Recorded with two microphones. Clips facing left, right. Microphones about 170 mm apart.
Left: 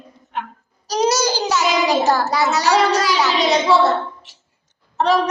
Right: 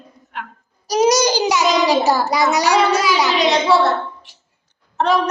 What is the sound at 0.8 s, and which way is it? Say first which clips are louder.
A child's voice: right 3 dB; 10° right (ahead or behind).